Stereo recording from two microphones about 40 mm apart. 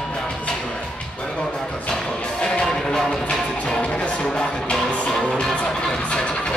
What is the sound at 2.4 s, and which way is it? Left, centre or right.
Music, centre.